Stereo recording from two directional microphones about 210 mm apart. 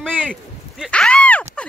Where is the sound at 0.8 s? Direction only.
5° left (ahead or behind).